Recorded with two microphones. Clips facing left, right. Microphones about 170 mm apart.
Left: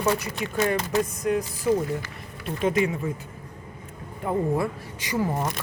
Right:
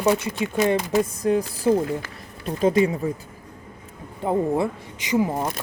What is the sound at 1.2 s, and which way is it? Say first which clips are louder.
Speech: right 4 dB; 30° right (ahead or behind).